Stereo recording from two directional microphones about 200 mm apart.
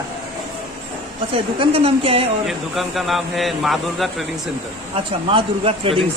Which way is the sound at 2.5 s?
Centre (ahead or behind).